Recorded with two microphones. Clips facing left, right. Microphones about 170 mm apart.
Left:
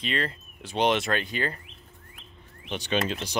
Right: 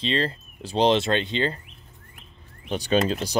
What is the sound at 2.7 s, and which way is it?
Speech, 35° right (ahead or behind).